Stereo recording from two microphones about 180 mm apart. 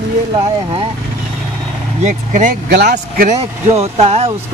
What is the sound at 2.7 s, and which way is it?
Speech, 70° right (ahead or behind).